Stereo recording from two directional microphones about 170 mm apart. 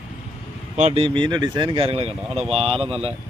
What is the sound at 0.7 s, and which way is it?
Speech, 40° right (ahead or behind).